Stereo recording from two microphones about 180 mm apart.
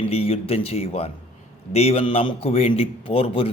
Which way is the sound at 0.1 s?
35° left (ahead or behind).